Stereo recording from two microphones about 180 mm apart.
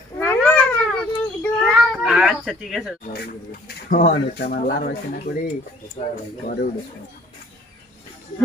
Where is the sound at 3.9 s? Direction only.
50° left (ahead or behind).